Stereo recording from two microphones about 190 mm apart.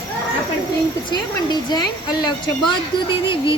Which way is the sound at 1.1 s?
20° left (ahead or behind).